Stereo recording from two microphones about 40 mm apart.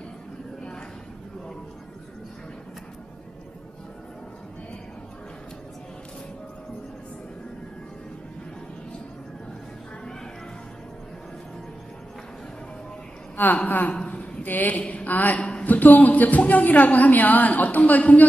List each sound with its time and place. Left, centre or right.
13.6 s a man's voice: left
14.8 s a woman's voice: left
15.0 s a woman's voice: left